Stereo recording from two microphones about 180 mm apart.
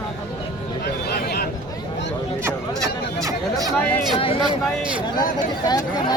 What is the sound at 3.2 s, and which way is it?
Speech, 20° right (ahead or behind).